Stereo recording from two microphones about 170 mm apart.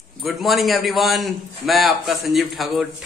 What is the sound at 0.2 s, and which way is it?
A man's voice, centre (ahead or behind).